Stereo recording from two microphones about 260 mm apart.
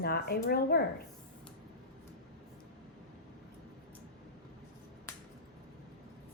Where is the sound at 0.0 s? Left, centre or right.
Left.